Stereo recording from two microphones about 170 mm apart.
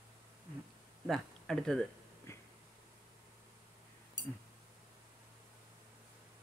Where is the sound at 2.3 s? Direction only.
15° left (ahead or behind).